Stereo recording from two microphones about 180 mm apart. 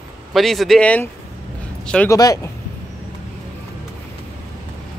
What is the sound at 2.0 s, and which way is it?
Speech, 20° left (ahead or behind).